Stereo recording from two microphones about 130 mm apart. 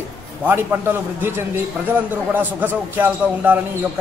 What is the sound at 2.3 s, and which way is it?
A man's voice, 15° right (ahead or behind).